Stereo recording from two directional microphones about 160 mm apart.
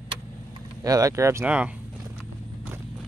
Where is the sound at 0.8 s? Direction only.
20° right (ahead or behind).